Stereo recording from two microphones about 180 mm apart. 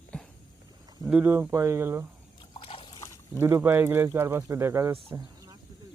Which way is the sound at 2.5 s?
30° left (ahead or behind).